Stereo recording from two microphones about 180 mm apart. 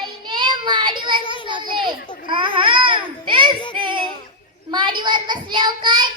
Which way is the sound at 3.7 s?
25° right (ahead or behind).